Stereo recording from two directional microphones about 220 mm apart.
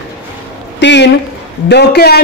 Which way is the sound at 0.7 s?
55° left (ahead or behind).